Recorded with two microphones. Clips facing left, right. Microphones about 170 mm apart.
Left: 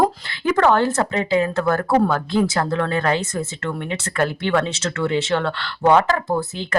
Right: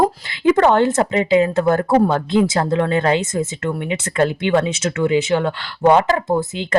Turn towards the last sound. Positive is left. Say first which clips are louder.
# right 4 dB
turn(degrees=-20)  # may be behind; listen again after turning